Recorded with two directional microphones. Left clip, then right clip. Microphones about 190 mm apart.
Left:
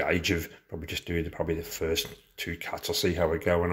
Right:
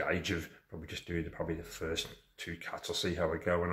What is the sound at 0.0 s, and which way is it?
Speech, 40° left (ahead or behind).